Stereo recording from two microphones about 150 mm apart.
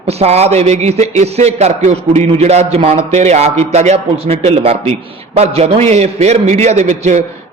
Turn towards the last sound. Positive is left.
turn(degrees=-50)  # may be behind; listen again after turning